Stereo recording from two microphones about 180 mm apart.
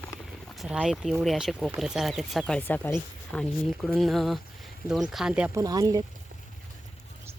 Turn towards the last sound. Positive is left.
turn(degrees=-20)  # may be behind; listen again after turning